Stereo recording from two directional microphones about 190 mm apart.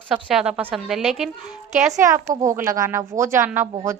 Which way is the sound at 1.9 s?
15° right (ahead or behind).